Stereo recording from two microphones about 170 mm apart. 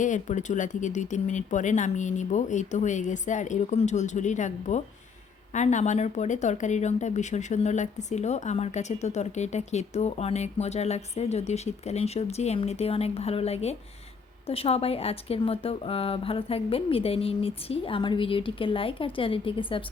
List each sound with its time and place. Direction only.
0.0 s speech: 45° left (ahead or behind); by 19.8 s 30° left (ahead or behind)